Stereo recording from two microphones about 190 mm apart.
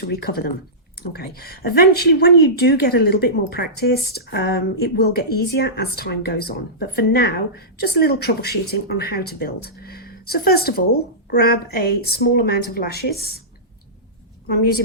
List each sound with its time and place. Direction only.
0.1 s a woman's voice: 55° left (ahead or behind)
14.4 s a woman's voice: 55° left (ahead or behind)